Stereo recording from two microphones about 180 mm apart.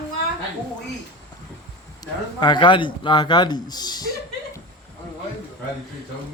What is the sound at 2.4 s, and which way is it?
Speech, 25° left (ahead or behind).